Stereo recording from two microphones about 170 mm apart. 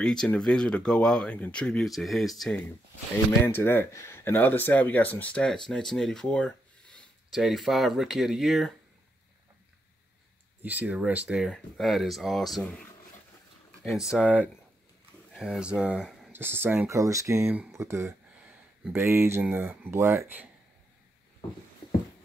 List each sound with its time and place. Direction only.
0.0 s speech: 5° left (ahead or behind)
3.3 s speech: 15° left (ahead or behind)
10.6 s speech: 10° right (ahead or behind)
13.8 s speech: centre (ahead or behind)